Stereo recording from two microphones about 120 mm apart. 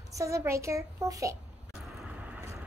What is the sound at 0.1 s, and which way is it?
A child's voice, 25° right (ahead or behind).